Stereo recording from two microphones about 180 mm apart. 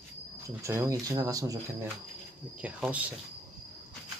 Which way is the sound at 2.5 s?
10° right (ahead or behind).